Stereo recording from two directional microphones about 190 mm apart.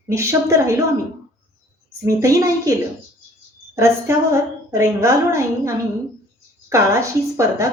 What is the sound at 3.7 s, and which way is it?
A woman's voice, 15° right (ahead or behind).